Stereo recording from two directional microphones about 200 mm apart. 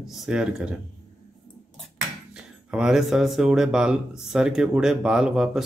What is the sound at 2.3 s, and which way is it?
A man's voice, 5° right (ahead or behind).